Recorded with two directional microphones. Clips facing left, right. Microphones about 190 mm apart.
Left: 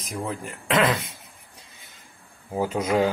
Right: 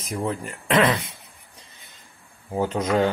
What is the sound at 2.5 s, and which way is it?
Speech, 5° left (ahead or behind).